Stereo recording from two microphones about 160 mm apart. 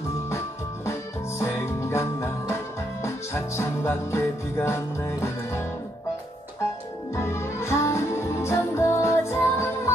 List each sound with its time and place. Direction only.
1.4 s music: 15° left (ahead or behind)
3.5 s music: 15° left (ahead or behind)
7.2 s music: 15° left (ahead or behind)